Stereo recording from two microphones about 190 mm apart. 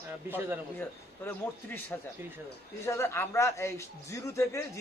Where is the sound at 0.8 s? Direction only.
10° left (ahead or behind).